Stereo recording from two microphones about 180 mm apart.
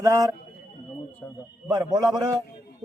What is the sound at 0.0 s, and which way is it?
Speech, 20° right (ahead or behind).